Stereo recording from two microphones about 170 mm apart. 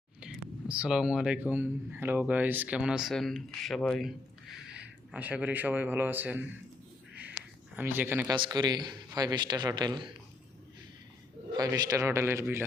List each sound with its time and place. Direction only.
0.2 s speech: 5° right (ahead or behind)
7.2 s a sound: 10° right (ahead or behind)
8.4 s a man's voice: 25° right (ahead or behind)
11.5 s a man's voice: 20° right (ahead or behind)